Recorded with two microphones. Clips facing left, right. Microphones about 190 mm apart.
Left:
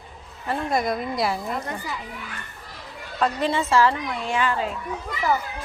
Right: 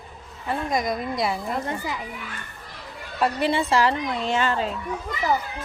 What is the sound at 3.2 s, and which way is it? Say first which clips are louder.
A child's voice: right 1 dB; 15° right (ahead or behind).